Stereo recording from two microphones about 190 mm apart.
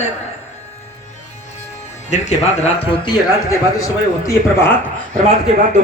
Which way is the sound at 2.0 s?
35° left (ahead or behind).